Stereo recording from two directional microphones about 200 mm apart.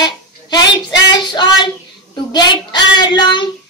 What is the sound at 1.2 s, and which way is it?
A child's voice, 20° left (ahead or behind).